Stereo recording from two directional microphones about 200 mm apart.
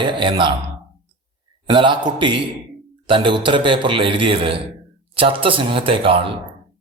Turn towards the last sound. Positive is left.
turn(degrees=-25)  # may be behind; listen again after turning